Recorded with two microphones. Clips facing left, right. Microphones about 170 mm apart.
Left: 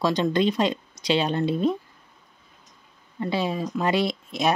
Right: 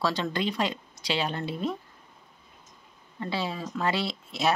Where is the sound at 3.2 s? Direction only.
15° left (ahead or behind).